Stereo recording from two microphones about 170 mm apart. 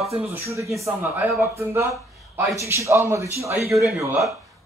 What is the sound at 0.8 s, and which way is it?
A man's voice, 15° right (ahead or behind).